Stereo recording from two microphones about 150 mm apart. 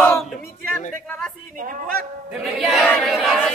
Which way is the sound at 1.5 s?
65° right (ahead or behind).